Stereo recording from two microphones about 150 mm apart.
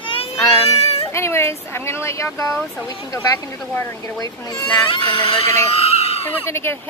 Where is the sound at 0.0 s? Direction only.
35° left (ahead or behind).